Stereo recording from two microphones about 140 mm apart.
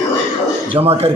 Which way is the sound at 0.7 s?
45° right (ahead or behind).